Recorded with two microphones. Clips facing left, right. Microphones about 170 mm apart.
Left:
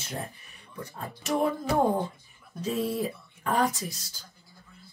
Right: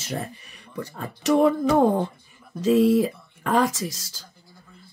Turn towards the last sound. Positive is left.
turn(degrees=-90)